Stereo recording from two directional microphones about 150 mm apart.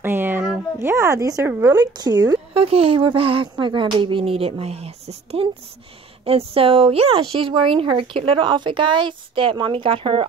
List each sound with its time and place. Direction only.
0.0 s a sound: 15° right (ahead or behind)
0.7 s speech: 15° right (ahead or behind)
2.5 s speech: 40° right (ahead or behind)